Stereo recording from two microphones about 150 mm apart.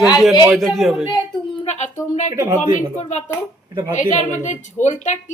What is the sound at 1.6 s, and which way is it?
Speech, 50° left (ahead or behind).